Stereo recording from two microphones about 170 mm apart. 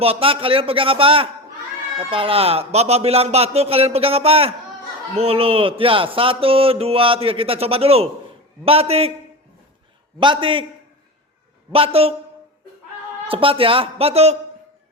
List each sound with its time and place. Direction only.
0.0 s a man's voice: 35° right (ahead or behind)
10.2 s a man's voice: 30° right (ahead or behind)
11.7 s a man's voice: 35° right (ahead or behind)
13.2 s a man's voice: 35° right (ahead or behind)